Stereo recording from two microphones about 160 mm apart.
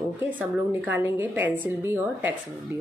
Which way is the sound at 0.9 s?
15° right (ahead or behind).